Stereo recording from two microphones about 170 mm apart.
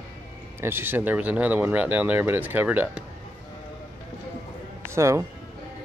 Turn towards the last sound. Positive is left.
turn(degrees=-15)  # may be behind; listen again after turning